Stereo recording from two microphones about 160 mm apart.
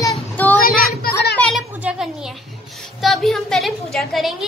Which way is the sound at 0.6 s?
70° left (ahead or behind).